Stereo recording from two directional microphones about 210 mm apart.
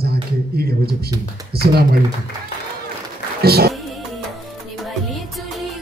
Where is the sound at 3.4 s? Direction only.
50° right (ahead or behind).